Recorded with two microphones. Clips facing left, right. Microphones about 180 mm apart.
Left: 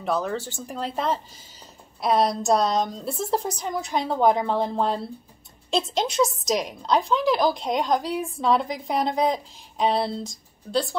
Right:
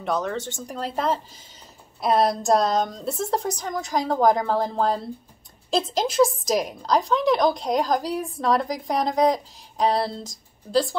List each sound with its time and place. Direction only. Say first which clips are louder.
0.0 s a woman's voice: even; 5° left (ahead or behind)
0.4 s speech: right 3 dB; 35° left (ahead or behind)
0.7 s a woman's voice: right 1 dB; centre (ahead or behind)